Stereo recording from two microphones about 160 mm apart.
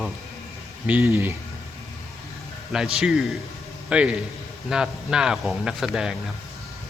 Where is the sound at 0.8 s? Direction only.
15° right (ahead or behind).